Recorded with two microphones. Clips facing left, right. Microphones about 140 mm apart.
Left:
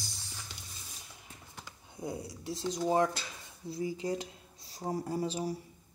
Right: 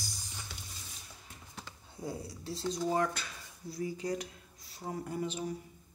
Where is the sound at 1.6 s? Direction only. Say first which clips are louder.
Left 1 dB; 15° left (ahead or behind).